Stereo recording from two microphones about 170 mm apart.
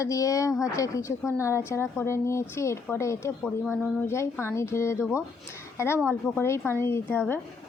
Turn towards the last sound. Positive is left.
turn(degrees=10)  # may be behind; listen again after turning